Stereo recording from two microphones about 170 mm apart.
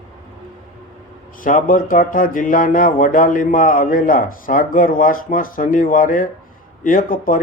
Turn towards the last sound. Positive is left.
turn(degrees=55)  # may be behind; listen again after turning